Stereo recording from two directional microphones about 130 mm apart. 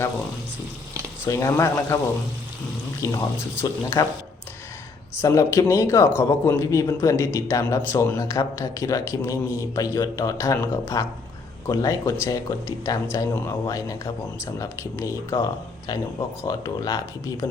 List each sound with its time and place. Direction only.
1.2 s speech: 25° left (ahead or behind)
3.0 s speech: 25° left (ahead or behind)
5.2 s speech: 25° left (ahead or behind)